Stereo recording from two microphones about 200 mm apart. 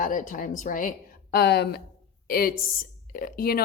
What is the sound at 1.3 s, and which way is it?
A woman's voice, 55° left (ahead or behind).